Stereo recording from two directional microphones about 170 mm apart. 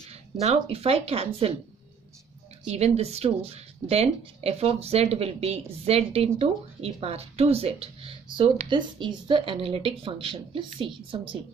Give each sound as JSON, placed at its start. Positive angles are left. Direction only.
{"t": 0.1, "sound": "speech", "side_deg": -40}
{"t": 2.6, "sound": "speech", "side_deg": -40}